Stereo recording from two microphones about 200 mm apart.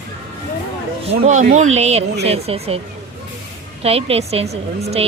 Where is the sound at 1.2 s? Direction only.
40° right (ahead or behind).